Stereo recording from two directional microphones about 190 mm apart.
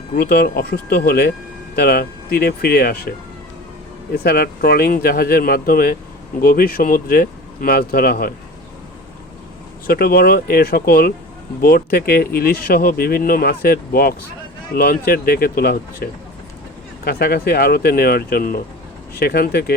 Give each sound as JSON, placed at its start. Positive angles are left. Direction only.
{"t": 0.2, "sound": "speech", "side_deg": 55}
{"t": 4.1, "sound": "speech", "side_deg": 55}
{"t": 9.8, "sound": "speech", "side_deg": 50}